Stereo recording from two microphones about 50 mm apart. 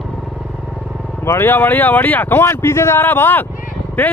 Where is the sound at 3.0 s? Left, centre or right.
Left.